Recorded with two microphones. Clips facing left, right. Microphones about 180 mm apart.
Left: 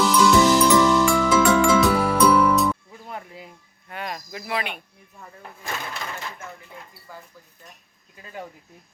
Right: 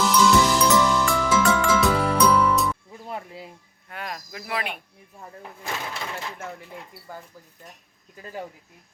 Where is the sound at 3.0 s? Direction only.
30° right (ahead or behind).